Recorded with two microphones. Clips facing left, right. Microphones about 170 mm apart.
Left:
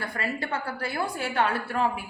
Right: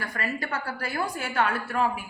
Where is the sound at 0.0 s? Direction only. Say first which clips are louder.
Even; 25° left (ahead or behind).